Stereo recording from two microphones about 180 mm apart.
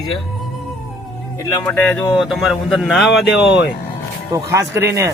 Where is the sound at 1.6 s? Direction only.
10° left (ahead or behind).